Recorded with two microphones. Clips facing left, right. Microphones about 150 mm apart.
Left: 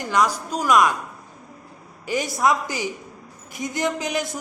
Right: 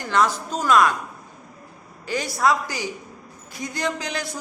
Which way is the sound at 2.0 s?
15° left (ahead or behind).